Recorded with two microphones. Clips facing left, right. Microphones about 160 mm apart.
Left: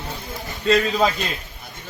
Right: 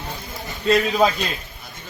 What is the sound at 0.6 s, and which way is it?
Speech, 10° right (ahead or behind).